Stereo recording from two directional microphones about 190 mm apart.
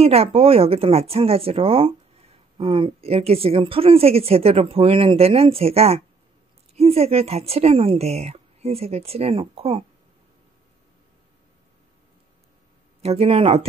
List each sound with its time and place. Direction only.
0.0 s speech: 30° right (ahead or behind)
13.0 s speech: 30° right (ahead or behind)